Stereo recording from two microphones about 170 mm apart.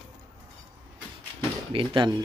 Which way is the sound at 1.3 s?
30° right (ahead or behind).